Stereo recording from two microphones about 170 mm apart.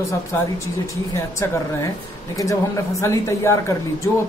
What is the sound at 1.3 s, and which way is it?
Speech, 15° left (ahead or behind).